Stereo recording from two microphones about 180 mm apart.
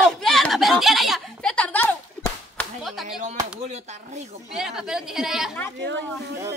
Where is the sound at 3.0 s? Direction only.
40° right (ahead or behind).